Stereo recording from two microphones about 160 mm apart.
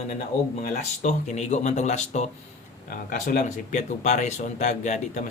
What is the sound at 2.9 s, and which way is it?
Speech, 60° left (ahead or behind).